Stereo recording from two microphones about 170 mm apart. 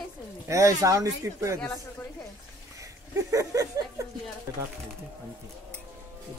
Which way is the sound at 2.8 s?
20° right (ahead or behind).